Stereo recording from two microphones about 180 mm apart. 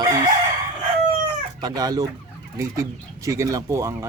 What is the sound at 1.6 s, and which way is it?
Speech, 20° right (ahead or behind).